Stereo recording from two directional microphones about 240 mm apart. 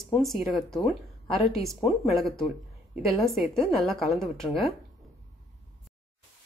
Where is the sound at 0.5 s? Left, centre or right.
Centre.